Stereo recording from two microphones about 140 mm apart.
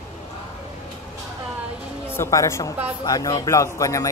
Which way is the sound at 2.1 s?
20° left (ahead or behind).